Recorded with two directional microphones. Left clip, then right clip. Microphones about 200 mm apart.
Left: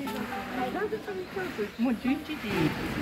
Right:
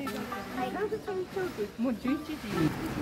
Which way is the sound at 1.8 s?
60° right (ahead or behind).